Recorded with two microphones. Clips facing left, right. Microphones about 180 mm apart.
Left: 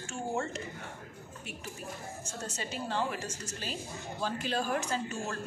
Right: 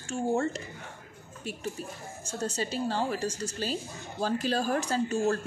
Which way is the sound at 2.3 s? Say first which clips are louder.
Right 9 dB; 35° right (ahead or behind).